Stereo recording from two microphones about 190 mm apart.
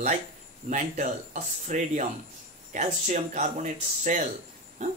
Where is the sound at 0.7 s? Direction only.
40° right (ahead or behind).